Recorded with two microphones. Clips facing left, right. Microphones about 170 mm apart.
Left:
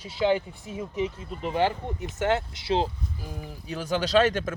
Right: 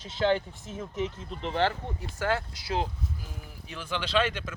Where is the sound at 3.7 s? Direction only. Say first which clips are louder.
Left 6 dB; 40° left (ahead or behind).